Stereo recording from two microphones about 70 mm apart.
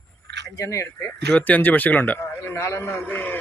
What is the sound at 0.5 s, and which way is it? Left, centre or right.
Speech, left.